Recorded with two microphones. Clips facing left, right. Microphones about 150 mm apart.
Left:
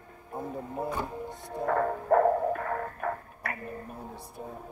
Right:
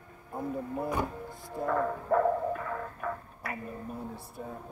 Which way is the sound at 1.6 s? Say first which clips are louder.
Left 3 dB; 55° left (ahead or behind).